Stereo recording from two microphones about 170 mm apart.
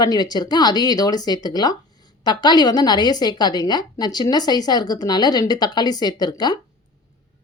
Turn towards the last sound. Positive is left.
turn(degrees=25)  # may be behind; listen again after turning